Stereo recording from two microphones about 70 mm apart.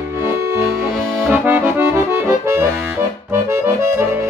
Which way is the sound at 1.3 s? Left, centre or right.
Right.